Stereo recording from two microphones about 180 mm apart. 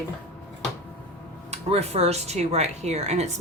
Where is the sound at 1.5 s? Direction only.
35° right (ahead or behind).